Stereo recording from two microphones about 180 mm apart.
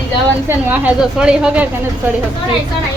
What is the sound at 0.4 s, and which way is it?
A woman's voice, 10° right (ahead or behind).